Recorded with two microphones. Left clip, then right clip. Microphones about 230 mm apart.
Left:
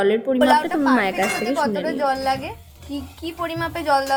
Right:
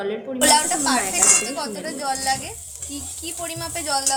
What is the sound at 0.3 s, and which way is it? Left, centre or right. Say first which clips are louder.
A woman's voice: right 2 dB; centre.